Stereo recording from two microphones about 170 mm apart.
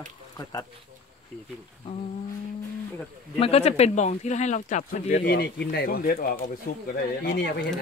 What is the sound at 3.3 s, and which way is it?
Speech, 35° left (ahead or behind).